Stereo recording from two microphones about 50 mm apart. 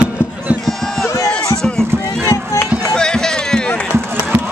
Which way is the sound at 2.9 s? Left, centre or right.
Centre.